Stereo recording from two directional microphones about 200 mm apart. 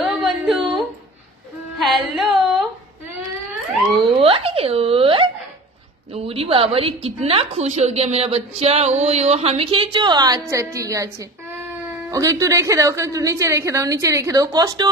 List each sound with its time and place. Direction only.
0.2 s a sound: centre (ahead or behind)
1.8 s music: centre (ahead or behind)
3.9 s wail: 25° right (ahead or behind)
6.1 s a woman's voice: 30° right (ahead or behind)
12.1 s a woman's voice: 15° right (ahead or behind)